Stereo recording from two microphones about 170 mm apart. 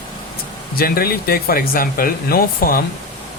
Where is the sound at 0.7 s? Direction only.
60° left (ahead or behind).